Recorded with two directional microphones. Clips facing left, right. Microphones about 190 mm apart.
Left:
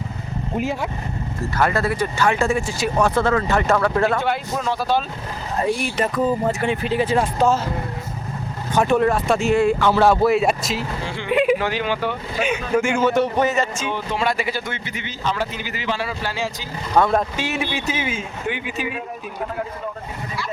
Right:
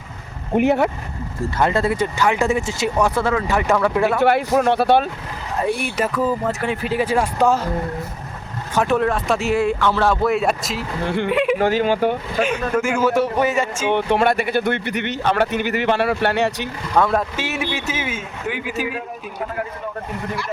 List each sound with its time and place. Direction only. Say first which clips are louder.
0.5 s speech: right 8 dB; 65° right (ahead or behind)
1.4 s speech: right 2 dB; 25° right (ahead or behind)
3.2 s speech: left 1 dB; 10° right (ahead or behind)
4.2 s speech: right 7 dB; 60° right (ahead or behind)
6.0 s speech: even; 5° right (ahead or behind)
8.7 s speech: left 1 dB; centre (ahead or behind)
9.7 s speech: left 2 dB; 10° left (ahead or behind)
11.0 s speech: right 7 dB; 60° right (ahead or behind)
11.3 s yodeling: left 3 dB; centre (ahead or behind)
11.5 s speech: right 4 dB; 45° right (ahead or behind)
12.7 s speech: left 1 dB; 5° right (ahead or behind)
13.8 s speech: right 6 dB; 65° right (ahead or behind)
16.9 s speech: left 1 dB; centre (ahead or behind)